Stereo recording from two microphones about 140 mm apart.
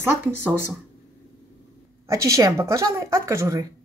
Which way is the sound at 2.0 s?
20° right (ahead or behind).